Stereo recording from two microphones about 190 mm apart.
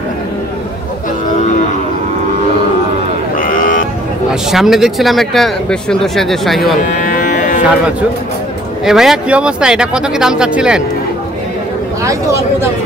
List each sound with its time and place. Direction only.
3.3 s run: 45° left (ahead or behind)
4.3 s speech: centre (ahead or behind)
7.0 s cattle: 45° left (ahead or behind)
8.8 s speech: centre (ahead or behind)
12.0 s speech: 15° right (ahead or behind)